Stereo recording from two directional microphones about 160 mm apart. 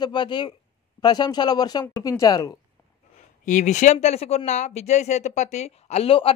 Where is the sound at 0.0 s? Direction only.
30° left (ahead or behind).